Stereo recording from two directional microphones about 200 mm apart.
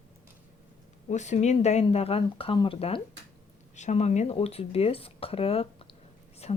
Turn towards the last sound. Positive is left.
turn(degrees=30)  # may be behind; listen again after turning